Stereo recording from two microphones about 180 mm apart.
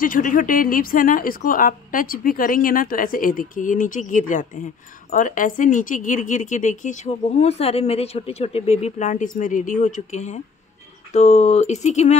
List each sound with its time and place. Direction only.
0.0 s speech: 50° left (ahead or behind)